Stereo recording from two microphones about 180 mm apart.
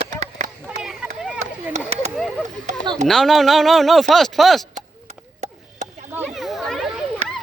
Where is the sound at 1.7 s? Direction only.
40° right (ahead or behind).